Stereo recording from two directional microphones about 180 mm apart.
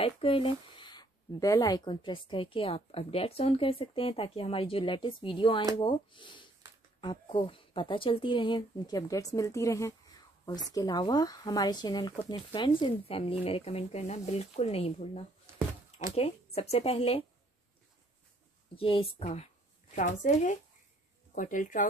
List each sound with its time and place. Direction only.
0.0 s speech: 30° left (ahead or behind)
16.5 s speech: 35° left (ahead or behind)
18.8 s speech: 30° left (ahead or behind); by 21.8 s 45° left (ahead or behind)